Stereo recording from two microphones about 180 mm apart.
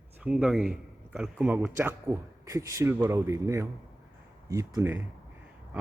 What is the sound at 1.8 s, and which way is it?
A man's voice, 15° right (ahead or behind).